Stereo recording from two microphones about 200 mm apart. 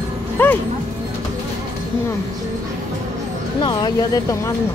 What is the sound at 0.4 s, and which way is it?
Speech, 10° left (ahead or behind).